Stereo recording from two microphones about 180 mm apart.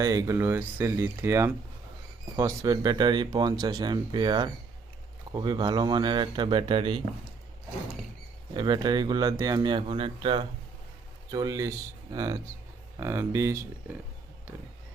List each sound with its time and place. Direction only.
0.0 s speech: 20° right (ahead or behind)
8.5 s speech: 25° right (ahead or behind)